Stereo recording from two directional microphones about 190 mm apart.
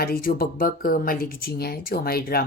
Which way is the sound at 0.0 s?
50° left (ahead or behind).